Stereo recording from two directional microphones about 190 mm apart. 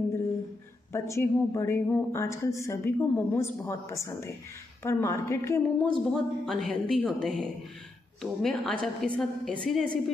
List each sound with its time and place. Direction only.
0.9 s a woman's voice: 15° left (ahead or behind)
5.9 s a woman's voice: centre (ahead or behind)